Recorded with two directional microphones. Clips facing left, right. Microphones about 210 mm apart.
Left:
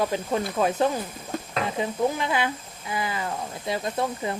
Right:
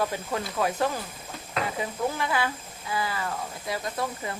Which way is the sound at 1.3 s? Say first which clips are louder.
Left 15 dB; 50° left (ahead or behind).